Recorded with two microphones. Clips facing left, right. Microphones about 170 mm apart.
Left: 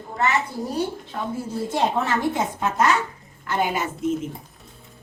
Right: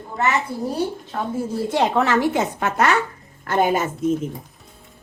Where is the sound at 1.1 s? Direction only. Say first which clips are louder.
Right 3 dB; 50° right (ahead or behind).